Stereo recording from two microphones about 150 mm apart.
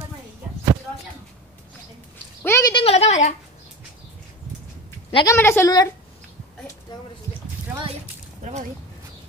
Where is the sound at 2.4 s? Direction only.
15° left (ahead or behind).